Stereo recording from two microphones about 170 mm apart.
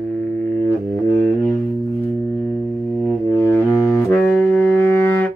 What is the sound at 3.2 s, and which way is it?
Music, 15° left (ahead or behind).